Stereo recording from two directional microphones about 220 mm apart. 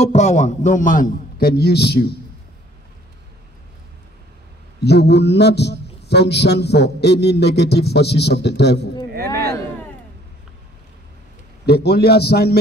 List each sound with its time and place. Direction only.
0.0 s a man's voice: 30° left (ahead or behind); by 2.1 s 45° left (ahead or behind)
4.7 s a man's voice: 50° left (ahead or behind)
11.6 s a man's voice: 45° left (ahead or behind)